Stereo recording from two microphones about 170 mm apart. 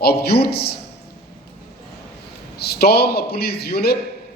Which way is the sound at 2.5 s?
70° left (ahead or behind).